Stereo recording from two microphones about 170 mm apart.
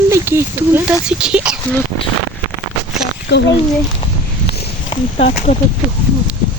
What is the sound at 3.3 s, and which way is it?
Speech, 90° left.